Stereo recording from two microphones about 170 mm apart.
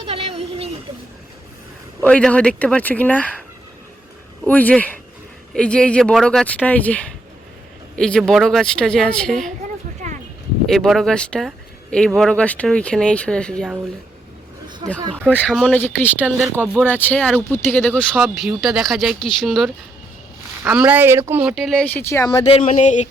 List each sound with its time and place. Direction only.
0.1 s a sound: 35° right (ahead or behind)
2.0 s speech: 5° left (ahead or behind)
4.4 s speech: 10° left (ahead or behind)
10.0 s a sound: 45° right (ahead or behind)
10.7 s speech: centre (ahead or behind)
15.3 s speech: 5° left (ahead or behind); by 21.5 s 15° right (ahead or behind)
21.5 s speech: centre (ahead or behind); by 22.4 s 20° left (ahead or behind)
22.4 s speech: 40° left (ahead or behind)